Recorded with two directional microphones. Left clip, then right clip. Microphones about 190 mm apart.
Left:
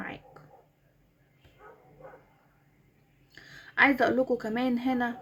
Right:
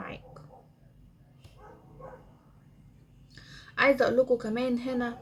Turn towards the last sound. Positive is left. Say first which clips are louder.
# left 2 dB
turn(degrees=50)  # may be behind; listen again after turning